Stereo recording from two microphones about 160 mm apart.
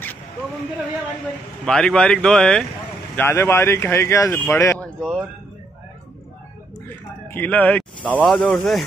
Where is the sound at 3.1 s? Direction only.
15° left (ahead or behind).